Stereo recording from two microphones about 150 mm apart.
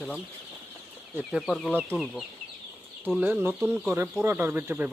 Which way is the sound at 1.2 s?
Centre (ahead or behind).